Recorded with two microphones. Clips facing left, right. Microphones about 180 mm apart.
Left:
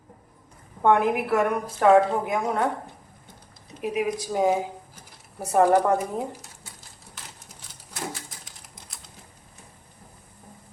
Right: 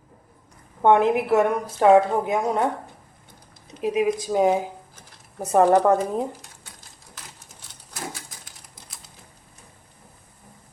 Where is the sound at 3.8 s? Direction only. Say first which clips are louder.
Right 4 dB; 20° right (ahead or behind).